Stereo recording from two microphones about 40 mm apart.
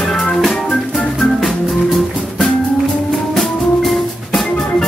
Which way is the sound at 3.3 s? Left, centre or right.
Centre.